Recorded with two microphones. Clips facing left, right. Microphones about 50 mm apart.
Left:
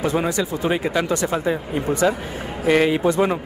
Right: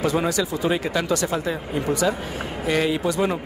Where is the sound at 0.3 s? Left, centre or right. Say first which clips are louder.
Left 1 dB; left.